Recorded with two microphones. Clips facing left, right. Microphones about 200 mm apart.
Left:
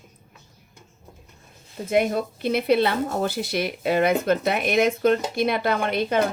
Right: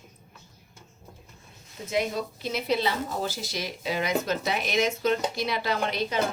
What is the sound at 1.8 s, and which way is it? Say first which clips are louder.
Speech: left 6 dB; 55° left (ahead or behind).